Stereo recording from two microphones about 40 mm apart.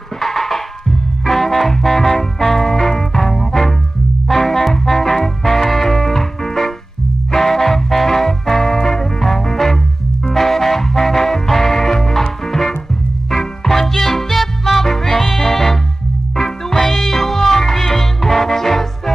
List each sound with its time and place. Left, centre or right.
0.2 s music: centre